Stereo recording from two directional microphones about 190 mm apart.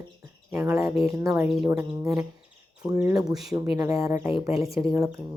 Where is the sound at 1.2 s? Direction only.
15° right (ahead or behind).